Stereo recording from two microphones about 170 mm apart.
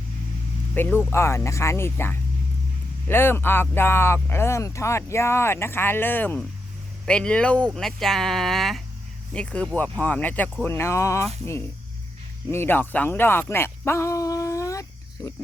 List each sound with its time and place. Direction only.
0.7 s speech: 10° left (ahead or behind)
12.5 s speech: 15° left (ahead or behind)